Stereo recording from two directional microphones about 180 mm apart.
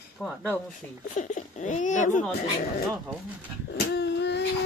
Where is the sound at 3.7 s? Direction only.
70° left (ahead or behind).